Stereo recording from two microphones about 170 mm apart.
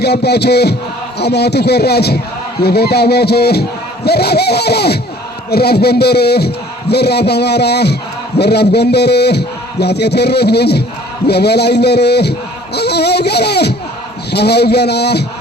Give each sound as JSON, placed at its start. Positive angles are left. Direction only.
{"t": 0.0, "sound": "a man's voice", "side_deg": 75}